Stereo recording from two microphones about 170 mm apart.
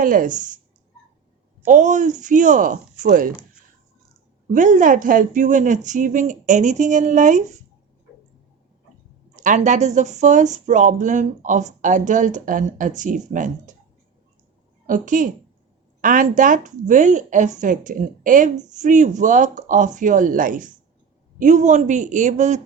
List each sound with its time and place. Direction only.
0.0 s a woman's voice: 50° right (ahead or behind)
1.6 s a woman's voice: 45° right (ahead or behind)
4.5 s a woman's voice: 50° right (ahead or behind)
9.3 s a woman's voice: 45° right (ahead or behind)
14.8 s a woman's voice: 50° right (ahead or behind)